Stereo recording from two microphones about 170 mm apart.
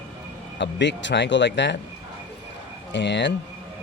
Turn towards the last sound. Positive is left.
turn(degrees=90)